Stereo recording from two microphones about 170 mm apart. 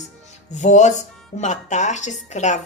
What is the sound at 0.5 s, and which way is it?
Speech, 45° left (ahead or behind).